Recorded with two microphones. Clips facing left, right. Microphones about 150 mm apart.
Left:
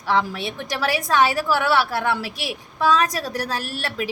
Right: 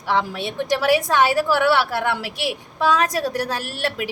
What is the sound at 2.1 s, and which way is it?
A woman's voice, 15° right (ahead or behind).